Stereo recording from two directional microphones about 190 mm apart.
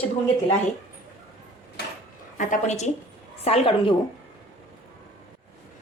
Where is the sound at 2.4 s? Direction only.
40° left (ahead or behind).